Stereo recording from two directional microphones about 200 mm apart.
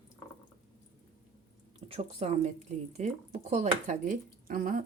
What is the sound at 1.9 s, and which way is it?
Speech, 30° right (ahead or behind).